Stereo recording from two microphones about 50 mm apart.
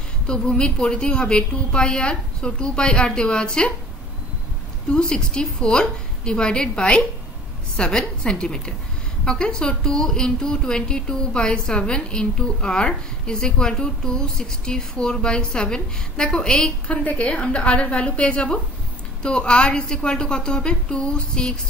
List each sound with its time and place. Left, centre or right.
0.3 s a woman's voice: centre
4.9 s a woman's voice: centre